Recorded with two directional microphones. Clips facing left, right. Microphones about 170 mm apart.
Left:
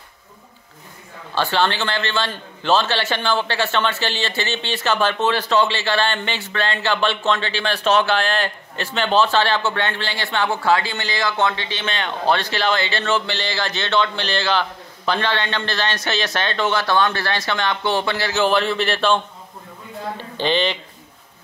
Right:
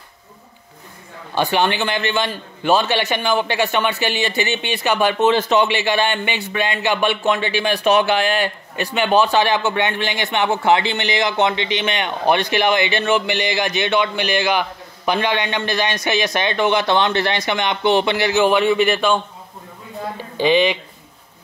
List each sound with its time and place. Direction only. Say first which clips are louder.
1.3 s a man's voice: right 2 dB; 15° right (ahead or behind)